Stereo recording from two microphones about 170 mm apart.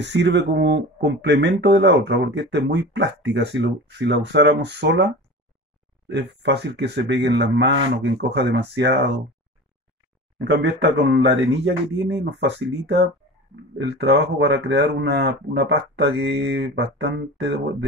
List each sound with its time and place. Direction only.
0.0 s speech: 90° right
10.4 s speech: 90° right